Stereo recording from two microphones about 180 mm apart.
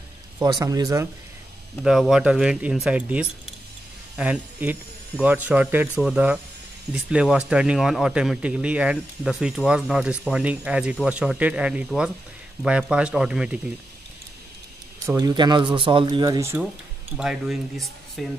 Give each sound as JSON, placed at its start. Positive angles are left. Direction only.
{"t": 0.4, "sound": "speech", "side_deg": -20}
{"t": 1.8, "sound": "speech", "side_deg": 0}
{"t": 15.0, "sound": "speech", "side_deg": -20}
{"t": 17.2, "sound": "speech", "side_deg": -5}